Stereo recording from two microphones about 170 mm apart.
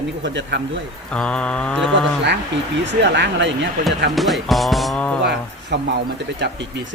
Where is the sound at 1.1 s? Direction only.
5° left (ahead or behind).